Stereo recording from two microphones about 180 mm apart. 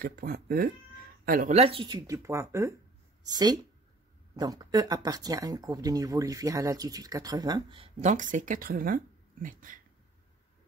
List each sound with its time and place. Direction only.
0.0 s speech: 55° right (ahead or behind)
1.5 s speech: 30° right (ahead or behind); by 9.8 s 50° right (ahead or behind)